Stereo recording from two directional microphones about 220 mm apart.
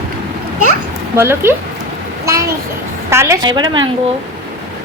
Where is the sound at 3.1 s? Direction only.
10° right (ahead or behind).